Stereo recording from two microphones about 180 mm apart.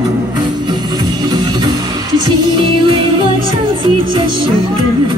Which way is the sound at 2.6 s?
25° right (ahead or behind).